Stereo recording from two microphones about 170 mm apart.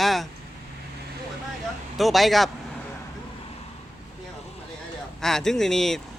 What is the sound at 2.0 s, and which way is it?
Speech, centre (ahead or behind).